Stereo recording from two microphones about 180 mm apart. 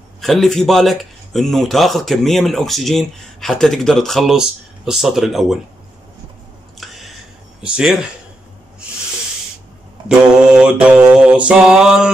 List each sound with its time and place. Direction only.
0.2 s a man's voice: centre (ahead or behind)
6.8 s chewing: centre (ahead or behind)
7.6 s a man's voice: 5° right (ahead or behind)
10.0 s a man's voice: 5° right (ahead or behind)